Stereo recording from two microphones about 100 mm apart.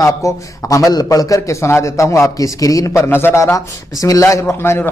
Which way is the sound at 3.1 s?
20° left (ahead or behind).